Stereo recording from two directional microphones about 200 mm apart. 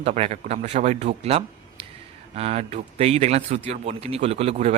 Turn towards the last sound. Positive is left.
turn(degrees=-30)  # may be behind; listen again after turning